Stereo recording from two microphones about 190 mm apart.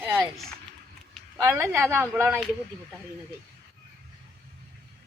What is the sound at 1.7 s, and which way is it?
Speech, 15° right (ahead or behind).